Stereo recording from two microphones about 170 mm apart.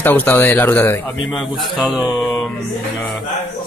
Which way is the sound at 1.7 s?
5° right (ahead or behind).